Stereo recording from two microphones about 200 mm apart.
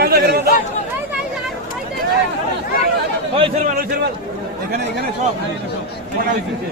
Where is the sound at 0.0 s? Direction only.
50° right (ahead or behind).